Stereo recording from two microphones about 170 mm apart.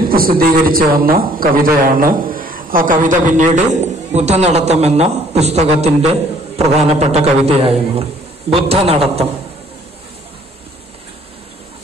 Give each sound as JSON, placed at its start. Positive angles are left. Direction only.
{"t": 0.1, "sound": "a man's voice", "side_deg": -60}